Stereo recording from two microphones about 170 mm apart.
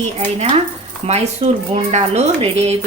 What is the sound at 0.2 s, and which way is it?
Speech, 40° right (ahead or behind).